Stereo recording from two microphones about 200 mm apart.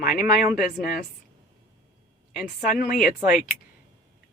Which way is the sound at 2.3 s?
45° left (ahead or behind).